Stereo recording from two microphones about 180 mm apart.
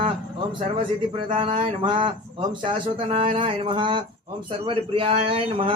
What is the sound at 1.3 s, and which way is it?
Speech, 25° right (ahead or behind).